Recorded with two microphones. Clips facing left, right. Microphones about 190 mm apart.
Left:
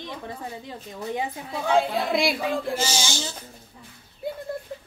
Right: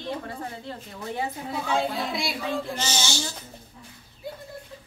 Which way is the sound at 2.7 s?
10° left (ahead or behind).